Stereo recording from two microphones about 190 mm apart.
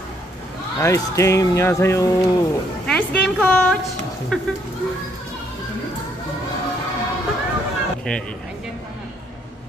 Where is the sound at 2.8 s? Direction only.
5° left (ahead or behind).